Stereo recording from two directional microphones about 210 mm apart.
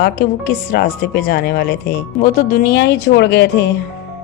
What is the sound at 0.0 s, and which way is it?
Speech, 45° left (ahead or behind).